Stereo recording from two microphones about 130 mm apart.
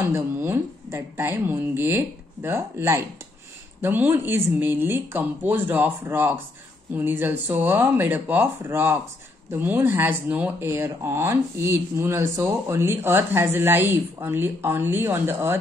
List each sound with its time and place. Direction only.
0.0 s speech: 20° right (ahead or behind)